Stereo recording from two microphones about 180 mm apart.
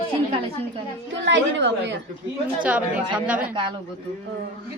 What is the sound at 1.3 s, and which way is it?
Speech, 80° right.